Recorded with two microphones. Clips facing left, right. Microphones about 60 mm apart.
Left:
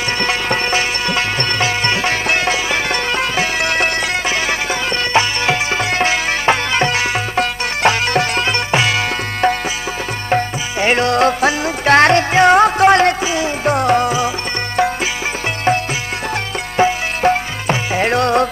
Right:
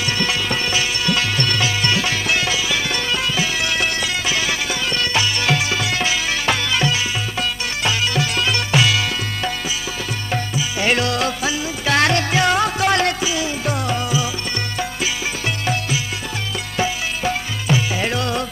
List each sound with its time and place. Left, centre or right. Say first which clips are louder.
0.2 s music: left 5 dB; left
10.3 s music: left 6 dB; left
15.6 s music: left 8 dB; left